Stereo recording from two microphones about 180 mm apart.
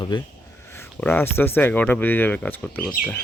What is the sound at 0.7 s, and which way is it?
Speech, 10° left (ahead or behind).